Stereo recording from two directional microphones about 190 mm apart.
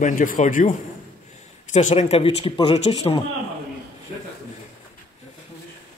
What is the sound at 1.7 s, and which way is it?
Speech, 35° left (ahead or behind).